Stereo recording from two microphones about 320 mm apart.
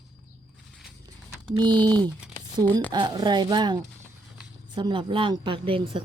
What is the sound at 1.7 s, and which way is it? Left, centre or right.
Speech, centre.